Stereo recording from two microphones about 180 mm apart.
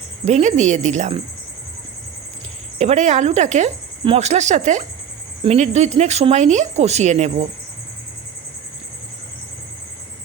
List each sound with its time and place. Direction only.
0.3 s speech: 40° right (ahead or behind)
2.7 s speech: 40° right (ahead or behind)